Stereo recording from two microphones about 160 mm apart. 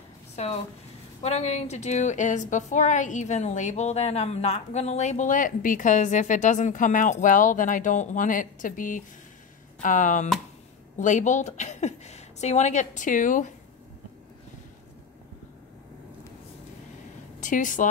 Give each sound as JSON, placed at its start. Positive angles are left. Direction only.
{"t": 0.4, "sound": "a woman's voice", "side_deg": 40}
{"t": 17.4, "sound": "speech", "side_deg": 55}